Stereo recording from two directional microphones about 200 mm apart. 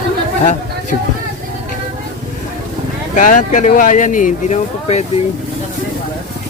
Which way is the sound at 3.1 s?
40° left (ahead or behind).